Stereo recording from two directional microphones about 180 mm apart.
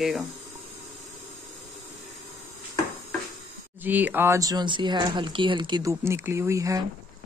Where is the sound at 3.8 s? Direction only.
10° right (ahead or behind).